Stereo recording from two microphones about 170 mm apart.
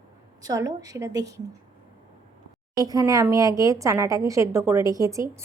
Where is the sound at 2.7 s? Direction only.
20° right (ahead or behind).